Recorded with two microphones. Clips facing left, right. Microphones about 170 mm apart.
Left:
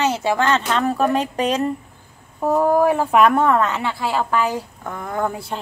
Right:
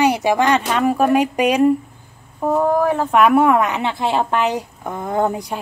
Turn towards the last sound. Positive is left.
turn(degrees=-20)  # may be behind; listen again after turning